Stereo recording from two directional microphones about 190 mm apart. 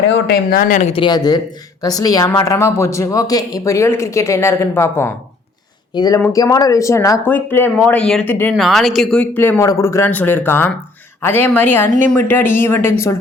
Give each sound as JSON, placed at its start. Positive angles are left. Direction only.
{"t": 0.1, "sound": "a woman's voice", "side_deg": 55}
{"t": 8.5, "sound": "a woman's voice", "side_deg": 0}